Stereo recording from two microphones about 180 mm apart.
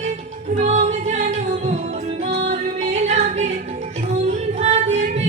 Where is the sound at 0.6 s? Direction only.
40° right (ahead or behind).